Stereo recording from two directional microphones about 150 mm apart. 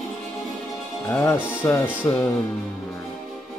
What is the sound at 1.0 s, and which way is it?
Music, 15° left (ahead or behind).